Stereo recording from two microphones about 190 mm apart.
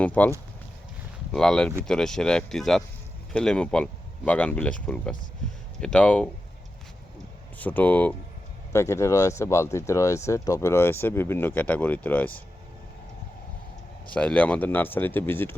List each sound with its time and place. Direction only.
0.0 s speech: 10° left (ahead or behind)
7.6 s speech: 10° left (ahead or behind)
14.1 s speech: 5° left (ahead or behind)